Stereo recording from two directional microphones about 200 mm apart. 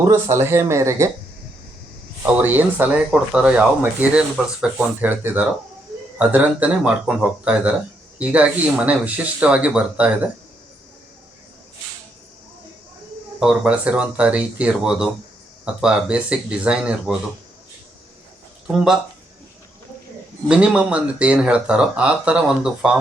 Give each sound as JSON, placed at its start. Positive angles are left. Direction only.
{"t": 0.1, "sound": "speech", "side_deg": -15}
{"t": 2.2, "sound": "speech", "side_deg": -10}
{"t": 13.4, "sound": "speech", "side_deg": -5}
{"t": 20.5, "sound": "speech", "side_deg": -5}